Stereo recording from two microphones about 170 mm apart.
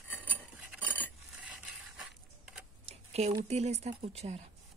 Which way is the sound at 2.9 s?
40° right (ahead or behind).